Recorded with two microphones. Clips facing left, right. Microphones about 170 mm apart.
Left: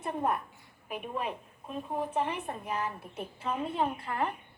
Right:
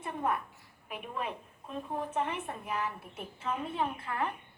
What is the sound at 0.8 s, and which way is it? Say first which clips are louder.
A woman's voice: left 3 dB; 20° left (ahead or behind).